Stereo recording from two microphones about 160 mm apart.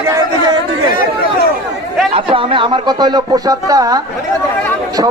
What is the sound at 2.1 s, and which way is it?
Speech, 35° right (ahead or behind).